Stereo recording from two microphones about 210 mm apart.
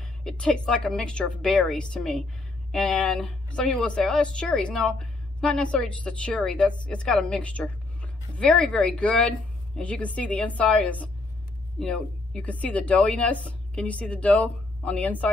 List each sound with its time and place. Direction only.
0.0 s a woman's voice: 5° left (ahead or behind)